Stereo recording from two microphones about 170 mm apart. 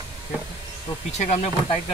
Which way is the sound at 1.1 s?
40° left (ahead or behind).